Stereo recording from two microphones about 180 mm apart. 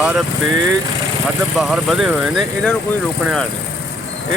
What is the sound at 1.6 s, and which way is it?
Speech, centre (ahead or behind).